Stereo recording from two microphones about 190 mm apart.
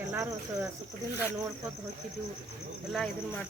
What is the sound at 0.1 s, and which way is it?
Cricket, 15° right (ahead or behind).